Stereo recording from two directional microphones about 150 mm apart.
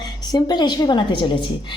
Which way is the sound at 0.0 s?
25° left (ahead or behind).